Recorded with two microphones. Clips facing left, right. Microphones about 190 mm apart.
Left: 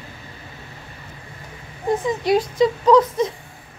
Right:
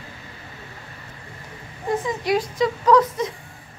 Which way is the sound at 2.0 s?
25° left (ahead or behind).